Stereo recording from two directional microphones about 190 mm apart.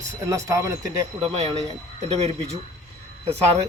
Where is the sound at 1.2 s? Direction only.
30° right (ahead or behind).